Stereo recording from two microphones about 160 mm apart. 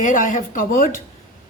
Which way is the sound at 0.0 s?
55° left (ahead or behind).